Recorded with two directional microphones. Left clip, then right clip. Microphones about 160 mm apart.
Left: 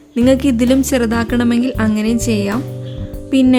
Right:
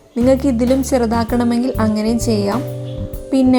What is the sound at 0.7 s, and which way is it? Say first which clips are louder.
Speech: left 3 dB; 25° left (ahead or behind).